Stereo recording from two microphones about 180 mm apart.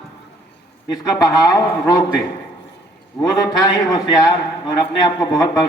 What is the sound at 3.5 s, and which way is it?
A man's voice, 20° left (ahead or behind).